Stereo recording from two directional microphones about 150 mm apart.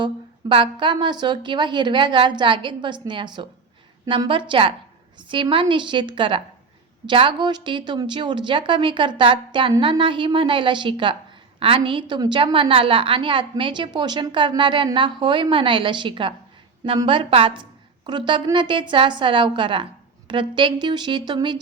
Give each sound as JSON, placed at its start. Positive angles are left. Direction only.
{"t": 0.0, "sound": "a woman's voice", "side_deg": -35}